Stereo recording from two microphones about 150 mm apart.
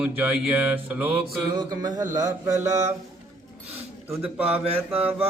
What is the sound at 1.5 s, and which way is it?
Mantra, 25° right (ahead or behind).